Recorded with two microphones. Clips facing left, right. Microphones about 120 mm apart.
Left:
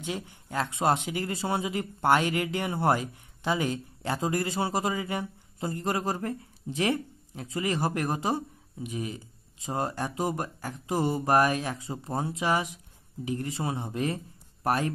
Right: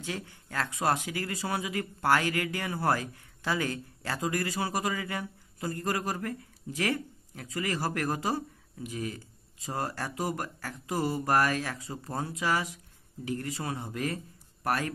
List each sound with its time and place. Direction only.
0.0 s a man's voice: 20° left (ahead or behind)